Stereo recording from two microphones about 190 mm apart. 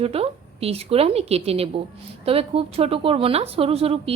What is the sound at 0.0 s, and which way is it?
A woman's voice, 30° right (ahead or behind).